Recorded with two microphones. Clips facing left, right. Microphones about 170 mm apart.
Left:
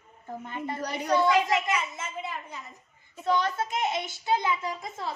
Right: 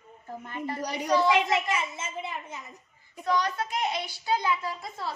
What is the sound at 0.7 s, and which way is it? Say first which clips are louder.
Speech: even; 10° right (ahead or behind).